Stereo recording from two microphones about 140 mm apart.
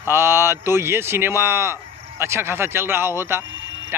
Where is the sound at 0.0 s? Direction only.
15° right (ahead or behind).